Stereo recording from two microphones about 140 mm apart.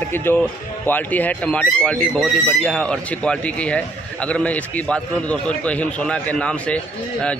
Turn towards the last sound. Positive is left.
turn(degrees=10)  # may be behind; listen again after turning